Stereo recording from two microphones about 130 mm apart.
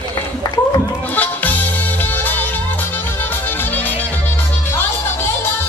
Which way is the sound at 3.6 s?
15° left (ahead or behind).